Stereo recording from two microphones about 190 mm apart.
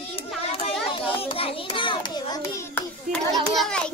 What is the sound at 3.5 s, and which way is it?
Children playing, 5° left (ahead or behind).